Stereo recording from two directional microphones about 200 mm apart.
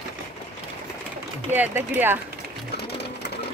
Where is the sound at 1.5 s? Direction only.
10° right (ahead or behind).